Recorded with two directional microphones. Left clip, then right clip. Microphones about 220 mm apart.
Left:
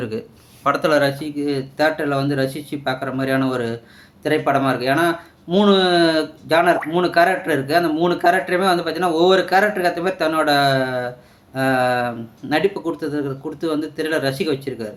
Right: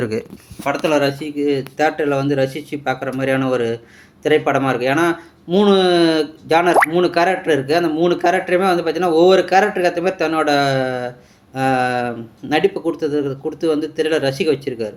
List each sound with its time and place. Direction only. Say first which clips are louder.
0.0 s speech: right 5 dB; 20° right (ahead or behind)
0.6 s speech: even; centre (ahead or behind)